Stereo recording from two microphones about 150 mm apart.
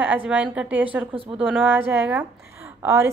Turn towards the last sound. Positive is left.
turn(degrees=-15)  # may be behind; listen again after turning